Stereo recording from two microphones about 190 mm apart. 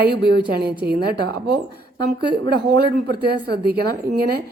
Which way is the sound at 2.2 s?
25° left (ahead or behind).